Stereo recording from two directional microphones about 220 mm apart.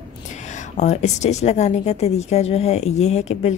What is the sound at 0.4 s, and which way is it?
A woman's voice, 30° left (ahead or behind).